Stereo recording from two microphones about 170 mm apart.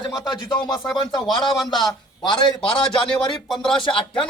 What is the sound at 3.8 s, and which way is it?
Speech, 30° left (ahead or behind).